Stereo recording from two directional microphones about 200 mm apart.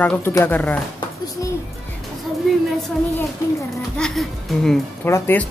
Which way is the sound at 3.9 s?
Centre (ahead or behind).